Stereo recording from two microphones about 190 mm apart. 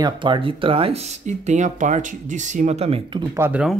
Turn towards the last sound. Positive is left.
turn(degrees=-5)  # may be behind; listen again after turning